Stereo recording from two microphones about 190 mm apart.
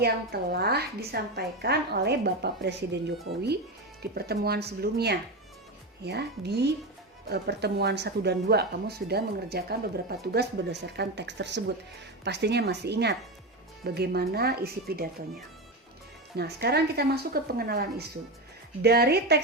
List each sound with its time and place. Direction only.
0.0 s speech: 55° right (ahead or behind)
4.1 s speech: 55° right (ahead or behind)
16.3 s speech: 55° right (ahead or behind)